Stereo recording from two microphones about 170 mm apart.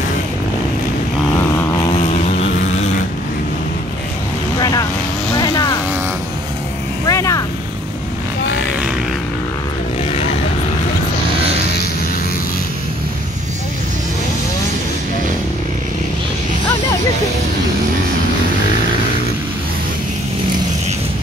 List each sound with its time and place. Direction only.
2.0 s vehicle: 40° left (ahead or behind)
4.6 s vehicle: 20° left (ahead or behind)
7.1 s vehicle: 20° left (ahead or behind)